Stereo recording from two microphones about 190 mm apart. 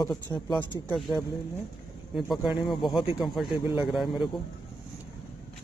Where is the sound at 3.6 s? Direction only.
10° right (ahead or behind).